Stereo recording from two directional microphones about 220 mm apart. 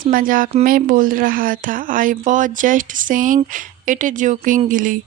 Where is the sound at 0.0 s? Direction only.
40° right (ahead or behind).